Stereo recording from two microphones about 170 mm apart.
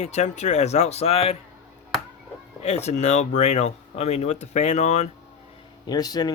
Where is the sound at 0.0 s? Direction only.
40° left (ahead or behind).